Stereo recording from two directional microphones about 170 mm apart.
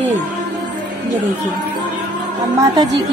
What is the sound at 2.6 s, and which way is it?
Speech, 25° right (ahead or behind).